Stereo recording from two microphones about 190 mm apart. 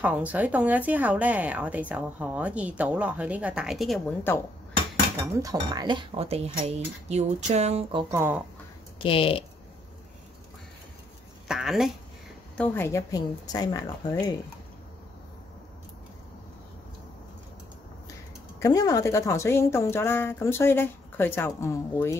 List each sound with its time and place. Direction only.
0.0 s a woman's voice: 10° right (ahead or behind)
4.3 s a woman's voice: 10° left (ahead or behind)
5.2 s speech: 20° right (ahead or behind)
8.2 s a woman's voice: 10° right (ahead or behind)
9.0 s speech: 30° left (ahead or behind)
11.4 s speech: centre (ahead or behind)
12.5 s a woman's voice: 10° left (ahead or behind)
18.6 s a woman's voice: 20° left (ahead or behind)